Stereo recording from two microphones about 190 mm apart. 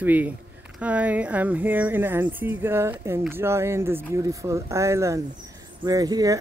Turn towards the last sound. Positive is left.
turn(degrees=-20)  # may be behind; listen again after turning